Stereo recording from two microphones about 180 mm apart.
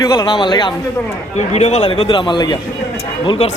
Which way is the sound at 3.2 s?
35° left (ahead or behind).